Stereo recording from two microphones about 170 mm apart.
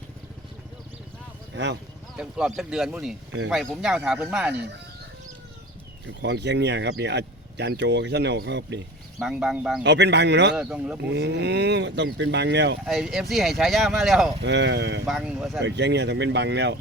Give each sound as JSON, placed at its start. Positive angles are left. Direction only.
{"t": 1.5, "sound": "speech", "side_deg": -90}
{"t": 2.1, "sound": "speech", "side_deg": -5}
{"t": 6.1, "sound": "speech", "side_deg": -90}
{"t": 9.2, "sound": "speech", "side_deg": -5}
{"t": 9.8, "sound": "speech", "side_deg": -90}
{"t": 10.5, "sound": "speech", "side_deg": -5}
{"t": 11.1, "sound": "speech", "side_deg": -90}
{"t": 12.8, "sound": "speech", "side_deg": 0}
{"t": 14.4, "sound": "speech", "side_deg": -90}
{"t": 15.0, "sound": "speech", "side_deg": -5}
{"t": 15.6, "sound": "speech", "side_deg": -90}